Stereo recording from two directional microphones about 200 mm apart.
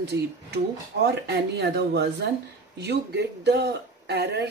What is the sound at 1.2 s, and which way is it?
Speech, 55° right (ahead or behind).